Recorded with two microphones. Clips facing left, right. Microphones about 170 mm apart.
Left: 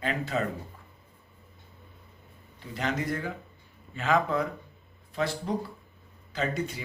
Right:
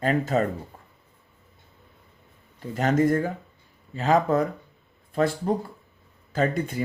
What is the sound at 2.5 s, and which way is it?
Speech, 45° right (ahead or behind).